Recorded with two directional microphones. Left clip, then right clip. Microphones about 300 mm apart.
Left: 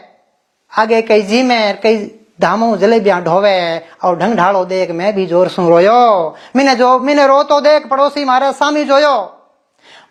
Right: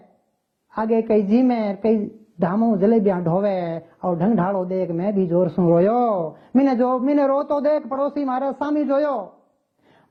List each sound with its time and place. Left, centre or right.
0.7 s a woman's voice: centre
6.1 s speech: left
6.3 s a man's voice: centre